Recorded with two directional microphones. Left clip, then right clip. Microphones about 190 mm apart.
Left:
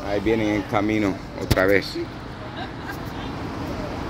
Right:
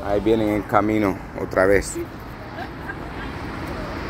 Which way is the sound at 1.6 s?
5° right (ahead or behind).